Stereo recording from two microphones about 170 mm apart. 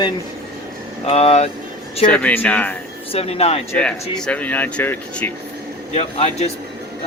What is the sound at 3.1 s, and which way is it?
Speech, 35° left (ahead or behind).